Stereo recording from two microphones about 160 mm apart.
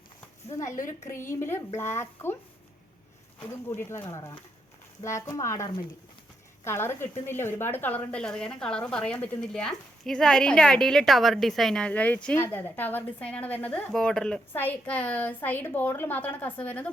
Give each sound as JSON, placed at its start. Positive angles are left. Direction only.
{"t": 0.5, "sound": "a woman's voice", "side_deg": 20}
{"t": 3.5, "sound": "a woman's voice", "side_deg": 15}
{"t": 6.7, "sound": "a woman's voice", "side_deg": 15}